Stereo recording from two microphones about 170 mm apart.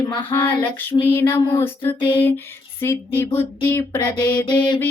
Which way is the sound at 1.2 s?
25° left (ahead or behind).